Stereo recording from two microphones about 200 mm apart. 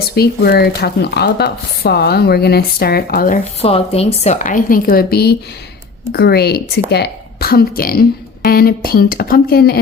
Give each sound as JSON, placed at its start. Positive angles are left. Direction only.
{"t": 0.0, "sound": "speech", "side_deg": 50}
{"t": 3.6, "sound": "a woman's voice", "side_deg": 30}